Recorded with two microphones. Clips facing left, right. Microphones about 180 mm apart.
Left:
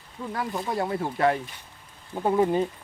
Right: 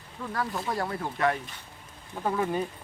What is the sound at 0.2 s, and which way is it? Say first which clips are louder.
Speech: left 2 dB; 15° left (ahead or behind).